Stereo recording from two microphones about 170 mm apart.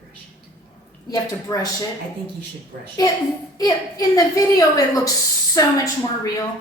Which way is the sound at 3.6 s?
20° left (ahead or behind).